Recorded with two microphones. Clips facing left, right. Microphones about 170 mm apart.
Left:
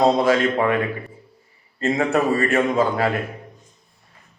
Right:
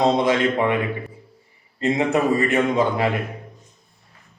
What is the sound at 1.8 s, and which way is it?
Speech, 20° right (ahead or behind).